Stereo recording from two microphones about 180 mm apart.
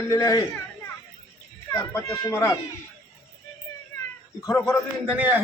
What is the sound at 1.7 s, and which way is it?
Speech, 15° left (ahead or behind).